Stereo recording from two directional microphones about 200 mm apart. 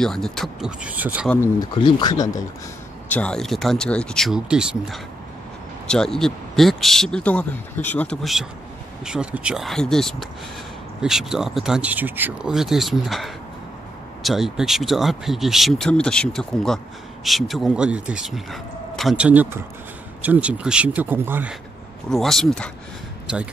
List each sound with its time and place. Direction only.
0.0 s speech: centre (ahead or behind)
1.3 s speech: 10° left (ahead or behind)
1.8 s speech: 25° left (ahead or behind)
3.1 s speech: 5° left (ahead or behind)
22.1 s speech: centre (ahead or behind)